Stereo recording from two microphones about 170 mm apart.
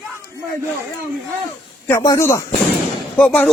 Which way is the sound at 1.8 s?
15° left (ahead or behind).